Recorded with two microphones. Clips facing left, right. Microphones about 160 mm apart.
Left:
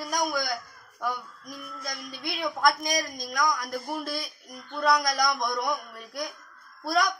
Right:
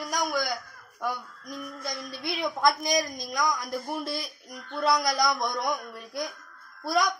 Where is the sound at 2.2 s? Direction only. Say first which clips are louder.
Even; 25° right (ahead or behind).